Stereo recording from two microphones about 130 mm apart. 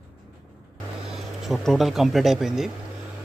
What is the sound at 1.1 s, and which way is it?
Speech, centre (ahead or behind).